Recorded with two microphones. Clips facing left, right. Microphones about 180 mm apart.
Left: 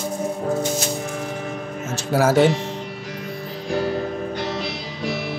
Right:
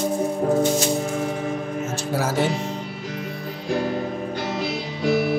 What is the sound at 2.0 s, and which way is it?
Music, 75° left (ahead or behind).